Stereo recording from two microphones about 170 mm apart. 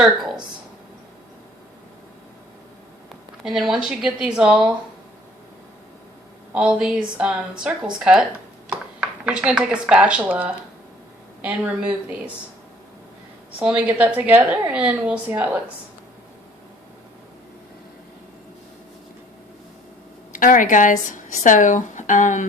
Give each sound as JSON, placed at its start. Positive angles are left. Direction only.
{"t": 3.4, "sound": "speech", "side_deg": 0}
{"t": 6.5, "sound": "speech", "side_deg": -5}
{"t": 9.2, "sound": "speech", "side_deg": -5}
{"t": 13.6, "sound": "speech", "side_deg": -10}
{"t": 20.3, "sound": "speech", "side_deg": 50}